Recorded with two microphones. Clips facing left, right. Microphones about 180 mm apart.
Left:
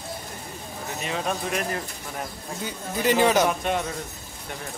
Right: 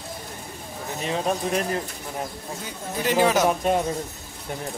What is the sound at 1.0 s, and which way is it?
Speech, 30° right (ahead or behind).